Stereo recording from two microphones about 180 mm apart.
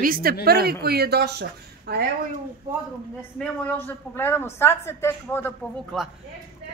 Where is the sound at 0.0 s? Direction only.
55° right (ahead or behind).